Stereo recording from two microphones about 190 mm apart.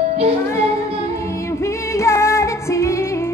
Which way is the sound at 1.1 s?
15° left (ahead or behind).